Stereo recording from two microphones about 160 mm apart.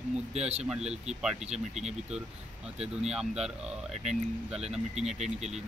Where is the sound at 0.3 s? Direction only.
40° right (ahead or behind).